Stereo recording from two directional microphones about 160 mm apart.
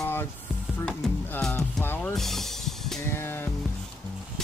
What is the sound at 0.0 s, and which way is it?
Music, 15° left (ahead or behind).